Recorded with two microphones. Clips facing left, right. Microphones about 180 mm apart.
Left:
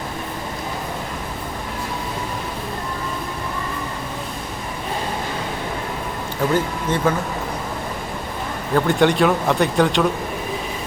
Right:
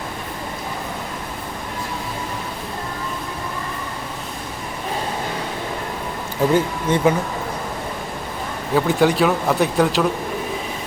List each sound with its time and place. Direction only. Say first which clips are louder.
6.5 s speech: right 2 dB; 15° right (ahead or behind)
8.7 s speech: even; 5° right (ahead or behind)